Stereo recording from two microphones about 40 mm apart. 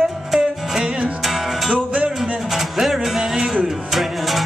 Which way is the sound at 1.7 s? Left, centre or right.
Right.